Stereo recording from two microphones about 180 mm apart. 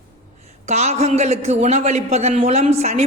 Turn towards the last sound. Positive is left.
turn(degrees=-35)  # may be behind; listen again after turning